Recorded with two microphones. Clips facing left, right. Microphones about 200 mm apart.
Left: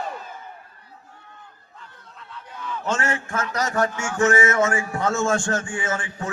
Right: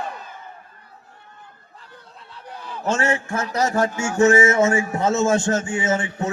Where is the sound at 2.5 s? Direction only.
35° right (ahead or behind).